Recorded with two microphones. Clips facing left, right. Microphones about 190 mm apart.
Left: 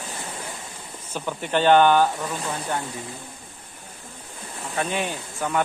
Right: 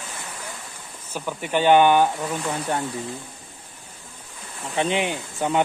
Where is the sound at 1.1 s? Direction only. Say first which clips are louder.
Even; 10° right (ahead or behind).